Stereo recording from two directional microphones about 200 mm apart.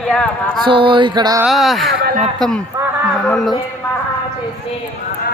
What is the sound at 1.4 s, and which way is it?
Speech, centre (ahead or behind).